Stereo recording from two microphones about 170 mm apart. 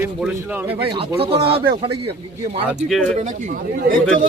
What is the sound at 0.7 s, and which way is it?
Speech, 30° right (ahead or behind).